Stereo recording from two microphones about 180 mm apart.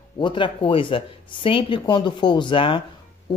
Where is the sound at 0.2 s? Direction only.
25° left (ahead or behind).